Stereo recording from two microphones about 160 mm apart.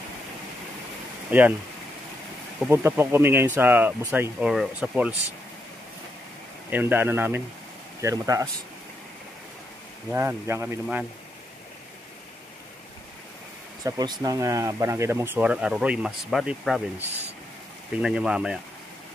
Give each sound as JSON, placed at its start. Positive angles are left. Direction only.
{"t": 1.3, "sound": "speech", "side_deg": -10}
{"t": 2.7, "sound": "speech", "side_deg": -15}
{"t": 4.5, "sound": "speech", "side_deg": 0}
{"t": 6.7, "sound": "speech", "side_deg": -10}
{"t": 10.1, "sound": "speech", "side_deg": -15}
{"t": 13.8, "sound": "speech", "side_deg": -25}
{"t": 18.0, "sound": "speech", "side_deg": -5}